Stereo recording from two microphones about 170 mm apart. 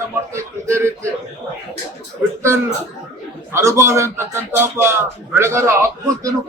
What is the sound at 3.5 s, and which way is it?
Speech, 15° right (ahead or behind).